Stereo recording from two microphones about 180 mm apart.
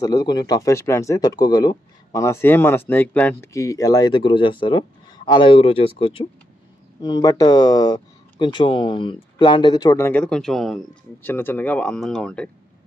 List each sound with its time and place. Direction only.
0.0 s speech: 20° left (ahead or behind); by 12.4 s 5° left (ahead or behind)